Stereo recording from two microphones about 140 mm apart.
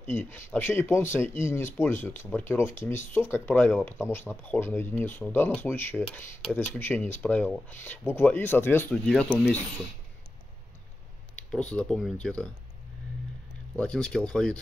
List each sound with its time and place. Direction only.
0.0 s speech: 15° left (ahead or behind)
11.3 s speech: 10° left (ahead or behind)
13.7 s speech: 5° left (ahead or behind)